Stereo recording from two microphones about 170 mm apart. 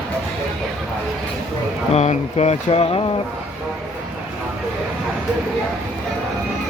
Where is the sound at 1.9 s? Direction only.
40° left (ahead or behind).